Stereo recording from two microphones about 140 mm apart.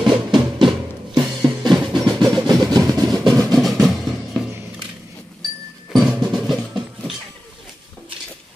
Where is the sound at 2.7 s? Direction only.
25° right (ahead or behind).